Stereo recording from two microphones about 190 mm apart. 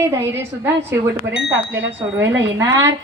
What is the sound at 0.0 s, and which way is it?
Speech, 15° right (ahead or behind).